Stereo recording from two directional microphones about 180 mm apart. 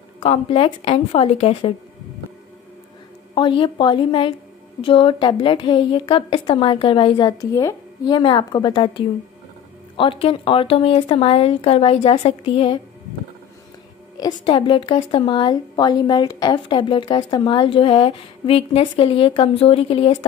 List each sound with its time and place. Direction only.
0.2 s speech: 35° left (ahead or behind)
3.3 s a woman's voice: 25° left (ahead or behind)
14.1 s a woman's voice: 25° left (ahead or behind)